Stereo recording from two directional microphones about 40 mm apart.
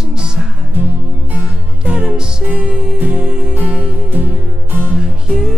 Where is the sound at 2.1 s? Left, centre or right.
Centre.